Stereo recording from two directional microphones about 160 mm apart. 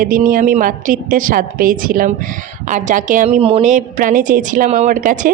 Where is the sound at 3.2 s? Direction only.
40° right (ahead or behind).